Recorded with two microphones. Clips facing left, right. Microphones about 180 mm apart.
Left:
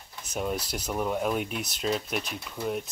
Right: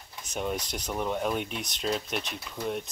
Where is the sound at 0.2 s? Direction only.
Centre (ahead or behind).